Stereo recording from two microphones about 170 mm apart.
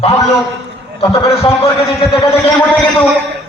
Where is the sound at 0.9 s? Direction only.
35° left (ahead or behind).